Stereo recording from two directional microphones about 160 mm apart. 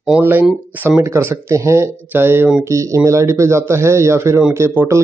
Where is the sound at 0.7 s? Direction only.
10° right (ahead or behind).